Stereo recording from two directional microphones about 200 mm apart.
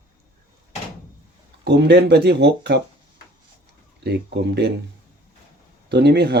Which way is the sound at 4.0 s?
55° right (ahead or behind).